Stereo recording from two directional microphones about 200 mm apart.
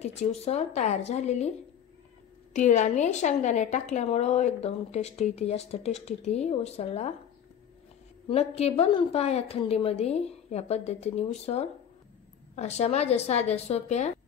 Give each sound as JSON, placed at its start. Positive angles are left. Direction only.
{"t": 0.0, "sound": "a woman's voice", "side_deg": 30}
{"t": 2.5, "sound": "a woman's voice", "side_deg": 35}
{"t": 8.3, "sound": "a woman's voice", "side_deg": 30}